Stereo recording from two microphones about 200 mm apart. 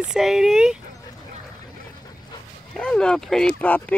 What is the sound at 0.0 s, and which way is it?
Speech, 5° right (ahead or behind).